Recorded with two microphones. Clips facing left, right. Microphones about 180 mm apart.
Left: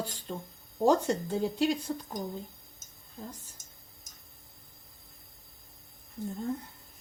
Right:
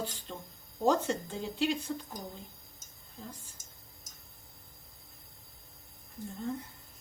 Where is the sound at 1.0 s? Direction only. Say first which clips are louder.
Left 5 dB; 40° left (ahead or behind).